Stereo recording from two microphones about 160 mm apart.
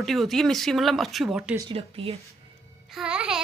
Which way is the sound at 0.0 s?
Centre (ahead or behind).